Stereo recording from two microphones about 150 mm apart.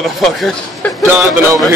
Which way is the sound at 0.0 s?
Centre (ahead or behind).